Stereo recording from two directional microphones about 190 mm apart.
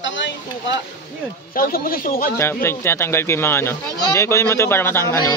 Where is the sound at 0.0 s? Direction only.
75° left (ahead or behind).